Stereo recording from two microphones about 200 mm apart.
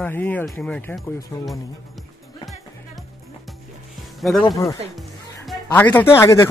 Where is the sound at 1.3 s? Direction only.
15° left (ahead or behind).